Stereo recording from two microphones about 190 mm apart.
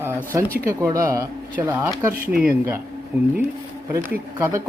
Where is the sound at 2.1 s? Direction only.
50° right (ahead or behind).